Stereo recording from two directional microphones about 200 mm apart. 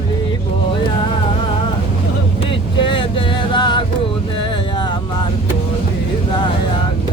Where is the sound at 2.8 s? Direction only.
25° left (ahead or behind).